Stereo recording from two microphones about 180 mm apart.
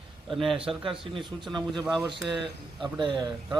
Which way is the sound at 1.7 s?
Centre (ahead or behind).